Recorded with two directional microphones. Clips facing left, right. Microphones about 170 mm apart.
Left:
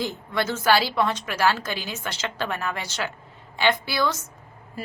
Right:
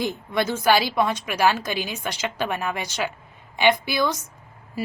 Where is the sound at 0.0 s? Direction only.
15° right (ahead or behind).